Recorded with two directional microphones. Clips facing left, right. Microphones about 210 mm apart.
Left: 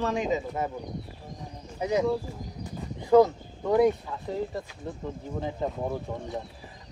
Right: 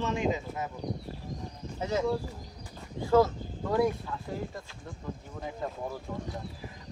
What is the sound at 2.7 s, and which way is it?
Speech, 20° left (ahead or behind).